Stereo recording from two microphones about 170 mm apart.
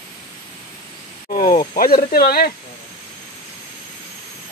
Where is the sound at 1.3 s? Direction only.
55° left (ahead or behind).